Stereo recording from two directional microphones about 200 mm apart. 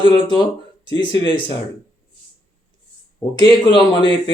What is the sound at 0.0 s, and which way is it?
Speech, 25° left (ahead or behind).